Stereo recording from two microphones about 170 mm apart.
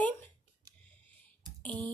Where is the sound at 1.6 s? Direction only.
10° left (ahead or behind).